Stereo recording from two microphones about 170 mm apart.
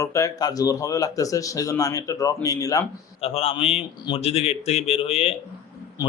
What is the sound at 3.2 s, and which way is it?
A man's voice, 35° left (ahead or behind).